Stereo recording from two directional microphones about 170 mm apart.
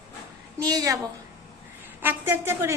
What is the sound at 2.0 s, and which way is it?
Speech, 10° right (ahead or behind).